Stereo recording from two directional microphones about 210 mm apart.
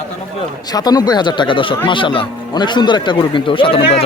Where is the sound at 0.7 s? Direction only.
20° left (ahead or behind).